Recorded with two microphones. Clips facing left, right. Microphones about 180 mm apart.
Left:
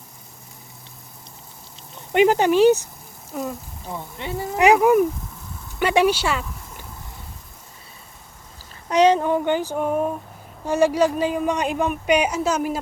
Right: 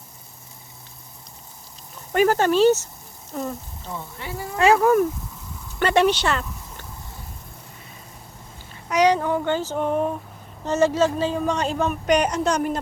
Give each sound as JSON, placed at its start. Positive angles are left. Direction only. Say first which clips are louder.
{"t": 2.1, "sound": "a woman's voice", "louder": "left 2 dB", "side_deg": 15}
{"t": 3.9, "sound": "a woman's voice", "louder": "left 4 dB", "side_deg": 20}
{"t": 8.9, "sound": "a woman's voice", "louder": "left 2 dB", "side_deg": 25}